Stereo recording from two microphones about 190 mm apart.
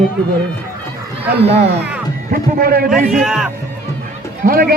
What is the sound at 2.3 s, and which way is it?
Speech, 50° right (ahead or behind).